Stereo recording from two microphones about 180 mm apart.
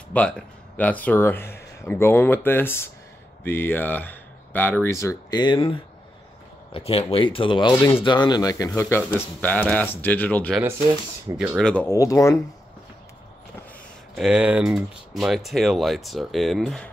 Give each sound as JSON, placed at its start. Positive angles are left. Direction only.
{"t": 0.1, "sound": "speech", "side_deg": 5}
{"t": 14.1, "sound": "speech", "side_deg": -5}